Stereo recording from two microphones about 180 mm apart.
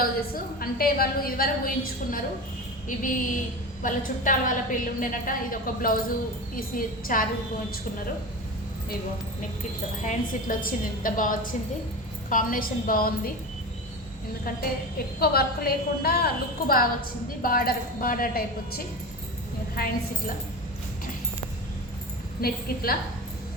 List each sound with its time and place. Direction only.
0.0 s a woman's voice: 55° left (ahead or behind)
10.0 s a woman's voice: 45° left (ahead or behind)
15.2 s a woman's voice: 60° left (ahead or behind)
22.4 s a woman's voice: 55° left (ahead or behind)